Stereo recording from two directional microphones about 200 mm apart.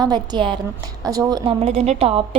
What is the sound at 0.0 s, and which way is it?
A woman's voice, 20° right (ahead or behind).